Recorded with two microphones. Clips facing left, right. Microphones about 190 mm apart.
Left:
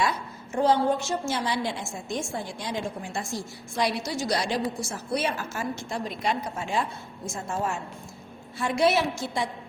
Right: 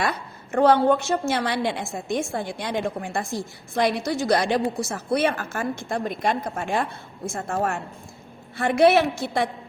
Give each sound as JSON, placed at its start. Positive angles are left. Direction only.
{"t": 0.0, "sound": "a woman's voice", "side_deg": -60}